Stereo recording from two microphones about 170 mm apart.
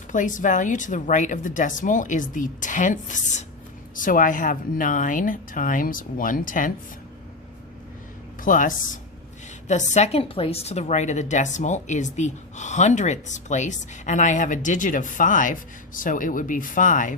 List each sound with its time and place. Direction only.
0.1 s a woman's voice: 50° left (ahead or behind)
8.4 s a woman's voice: 50° left (ahead or behind)